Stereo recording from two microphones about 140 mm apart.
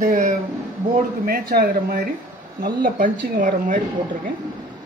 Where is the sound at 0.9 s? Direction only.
90° right; by 3.8 s 75° right (ahead or behind).